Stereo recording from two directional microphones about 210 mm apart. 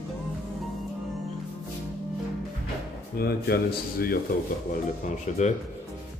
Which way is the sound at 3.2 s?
45° left (ahead or behind).